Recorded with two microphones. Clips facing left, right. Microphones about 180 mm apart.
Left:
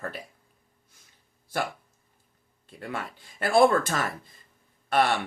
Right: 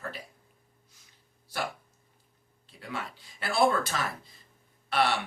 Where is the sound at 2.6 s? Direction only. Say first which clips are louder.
Left 3 dB; 50° left (ahead or behind).